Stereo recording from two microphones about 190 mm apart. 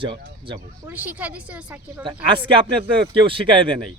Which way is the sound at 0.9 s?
10° right (ahead or behind).